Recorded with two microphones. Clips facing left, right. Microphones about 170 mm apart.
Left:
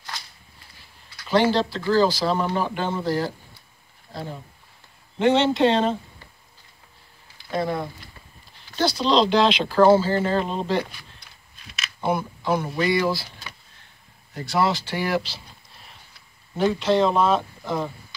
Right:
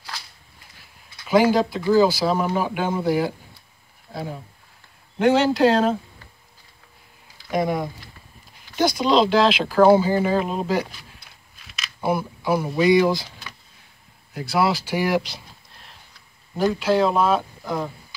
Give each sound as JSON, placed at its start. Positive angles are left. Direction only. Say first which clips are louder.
{"t": 1.2, "sound": "speech", "louder": "right 3 dB", "side_deg": -5}
{"t": 7.5, "sound": "speech", "louder": "right 3 dB", "side_deg": -15}
{"t": 14.3, "sound": "speech", "louder": "right 1 dB", "side_deg": -5}
{"t": 15.7, "sound": "horse", "louder": "even", "side_deg": 0}
{"t": 16.5, "sound": "speech", "louder": "even", "side_deg": -5}